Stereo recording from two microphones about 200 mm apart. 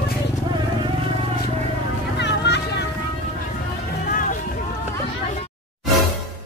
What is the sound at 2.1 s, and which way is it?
Vehicle, 60° left (ahead or behind).